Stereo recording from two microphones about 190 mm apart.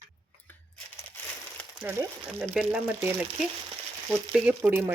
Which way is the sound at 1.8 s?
10° right (ahead or behind).